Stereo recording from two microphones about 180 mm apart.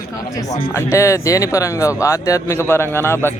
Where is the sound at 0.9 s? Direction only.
15° left (ahead or behind).